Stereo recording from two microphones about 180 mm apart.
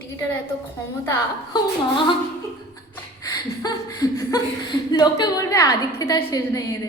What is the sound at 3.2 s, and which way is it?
Speech, 20° left (ahead or behind).